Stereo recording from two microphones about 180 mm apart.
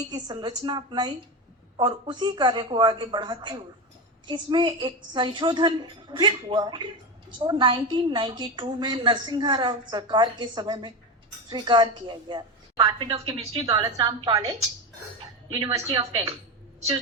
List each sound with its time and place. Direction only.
0.1 s a woman's voice: 25° right (ahead or behind)